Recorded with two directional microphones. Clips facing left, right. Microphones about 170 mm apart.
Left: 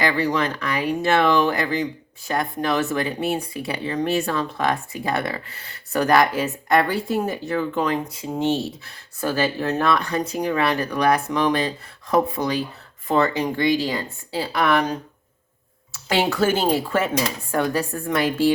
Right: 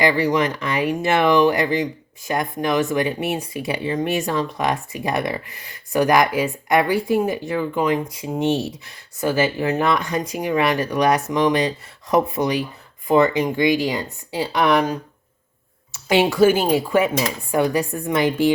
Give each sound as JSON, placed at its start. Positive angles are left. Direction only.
{"t": 0.0, "sound": "speech", "side_deg": -20}
{"t": 15.9, "sound": "speech", "side_deg": -15}